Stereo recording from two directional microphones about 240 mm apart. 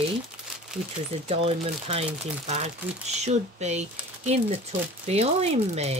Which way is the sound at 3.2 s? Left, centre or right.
Right.